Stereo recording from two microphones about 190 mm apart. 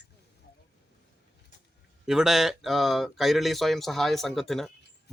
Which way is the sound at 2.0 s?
Centre (ahead or behind).